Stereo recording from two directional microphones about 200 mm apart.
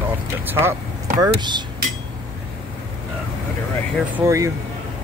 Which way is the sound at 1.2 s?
20° right (ahead or behind).